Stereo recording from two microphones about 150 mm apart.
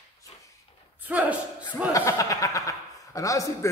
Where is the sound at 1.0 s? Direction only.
10° right (ahead or behind).